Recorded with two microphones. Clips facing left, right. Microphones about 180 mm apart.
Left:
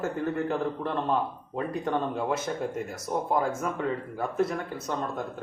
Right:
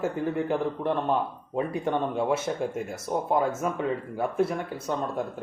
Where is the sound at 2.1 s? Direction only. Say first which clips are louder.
Right 3 dB; 10° right (ahead or behind).